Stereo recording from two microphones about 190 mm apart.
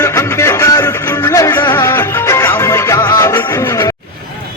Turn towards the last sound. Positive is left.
turn(degrees=15)  # may be behind; listen again after turning